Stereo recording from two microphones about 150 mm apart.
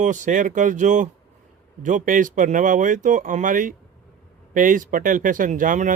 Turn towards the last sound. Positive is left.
turn(degrees=-60)  # may be behind; listen again after turning